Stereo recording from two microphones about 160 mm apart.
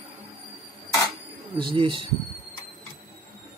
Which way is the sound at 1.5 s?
30° right (ahead or behind).